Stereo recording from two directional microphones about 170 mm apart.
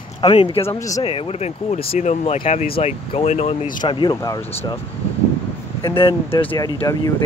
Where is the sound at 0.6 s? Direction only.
20° left (ahead or behind).